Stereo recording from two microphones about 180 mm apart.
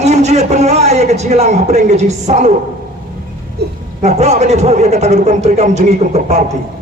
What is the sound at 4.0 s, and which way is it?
A man's voice, 40° right (ahead or behind).